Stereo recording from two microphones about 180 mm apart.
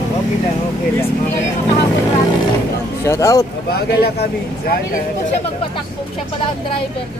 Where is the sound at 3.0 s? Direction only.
20° left (ahead or behind).